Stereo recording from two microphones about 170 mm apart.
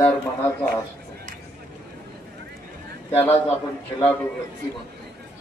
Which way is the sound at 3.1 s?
10° left (ahead or behind).